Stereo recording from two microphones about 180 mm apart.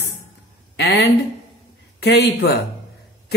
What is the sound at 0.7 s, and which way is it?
Speech, 65° left (ahead or behind).